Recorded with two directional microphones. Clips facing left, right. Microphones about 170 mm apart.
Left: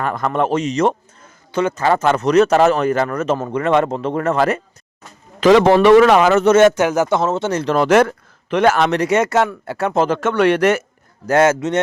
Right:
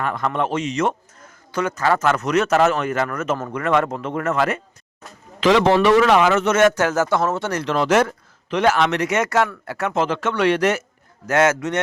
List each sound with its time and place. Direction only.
0.0 s speech: 45° left (ahead or behind)
5.4 s speech: 45° left (ahead or behind); by 7.6 s 20° left (ahead or behind)
7.6 s speech: 40° left (ahead or behind)
7.9 s speech: 55° left (ahead or behind)
11.3 s a man's voice: 30° left (ahead or behind)